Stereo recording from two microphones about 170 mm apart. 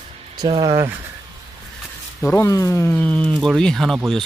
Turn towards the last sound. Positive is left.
turn(degrees=0)  # may be behind; listen again after turning